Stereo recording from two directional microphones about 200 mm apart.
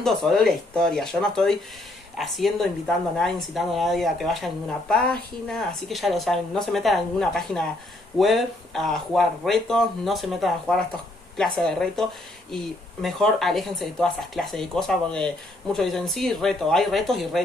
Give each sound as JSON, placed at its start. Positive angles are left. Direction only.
{"t": 0.0, "sound": "speech", "side_deg": 0}